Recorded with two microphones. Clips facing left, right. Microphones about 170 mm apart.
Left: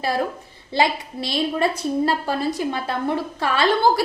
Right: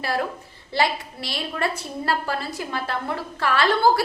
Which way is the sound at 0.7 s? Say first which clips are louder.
Left 3 dB; 20° left (ahead or behind).